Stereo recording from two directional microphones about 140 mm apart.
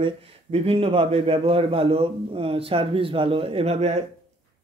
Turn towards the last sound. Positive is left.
turn(degrees=-50)  # may be behind; listen again after turning